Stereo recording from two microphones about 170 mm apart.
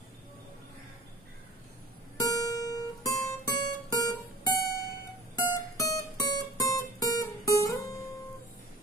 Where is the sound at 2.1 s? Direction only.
20° left (ahead or behind).